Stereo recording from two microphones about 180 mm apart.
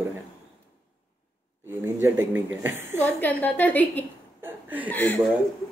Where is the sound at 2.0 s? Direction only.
10° right (ahead or behind).